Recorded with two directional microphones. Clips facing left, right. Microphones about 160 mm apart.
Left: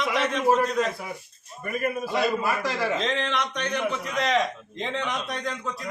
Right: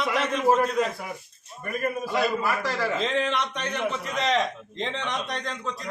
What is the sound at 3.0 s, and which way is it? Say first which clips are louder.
A man's voice: right 1 dB; 5° right (ahead or behind).